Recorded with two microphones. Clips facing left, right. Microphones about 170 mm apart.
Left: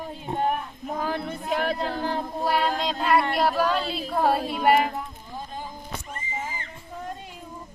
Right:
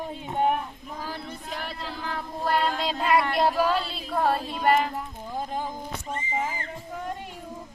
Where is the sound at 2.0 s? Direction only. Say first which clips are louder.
Left 6 dB; 30° left (ahead or behind).